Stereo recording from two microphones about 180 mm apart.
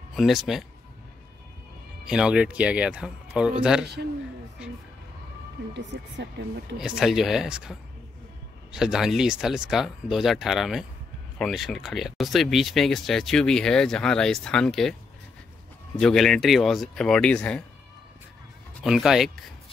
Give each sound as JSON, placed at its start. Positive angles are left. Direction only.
{"t": 0.1, "sound": "speech", "side_deg": 0}
{"t": 2.0, "sound": "speech", "side_deg": -5}
{"t": 3.8, "sound": "a man's voice", "side_deg": -65}
{"t": 5.7, "sound": "speech", "side_deg": -75}
{"t": 6.8, "sound": "speech", "side_deg": 0}
{"t": 16.0, "sound": "speech", "side_deg": 5}
{"t": 18.8, "sound": "speech", "side_deg": 0}